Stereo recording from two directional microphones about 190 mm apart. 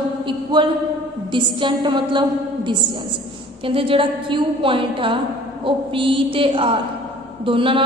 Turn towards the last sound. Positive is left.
turn(degrees=-25)  # may be behind; listen again after turning